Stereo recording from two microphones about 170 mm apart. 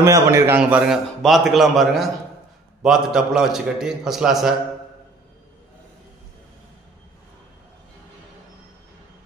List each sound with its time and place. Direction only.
0.0 s a man's voice: 15° right (ahead or behind)
0.6 s a man's voice: 5° right (ahead or behind)